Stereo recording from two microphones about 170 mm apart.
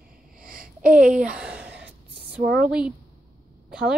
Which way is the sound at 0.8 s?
5° right (ahead or behind).